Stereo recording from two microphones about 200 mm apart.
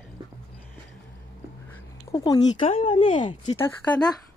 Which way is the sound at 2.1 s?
20° left (ahead or behind).